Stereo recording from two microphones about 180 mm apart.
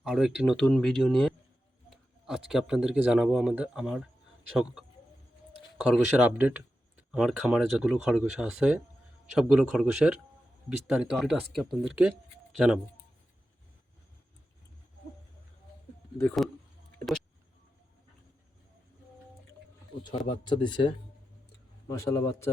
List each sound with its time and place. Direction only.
0.0 s speech: 5° right (ahead or behind)
16.1 s speech: 5° left (ahead or behind)
20.0 s a man's voice: 25° left (ahead or behind)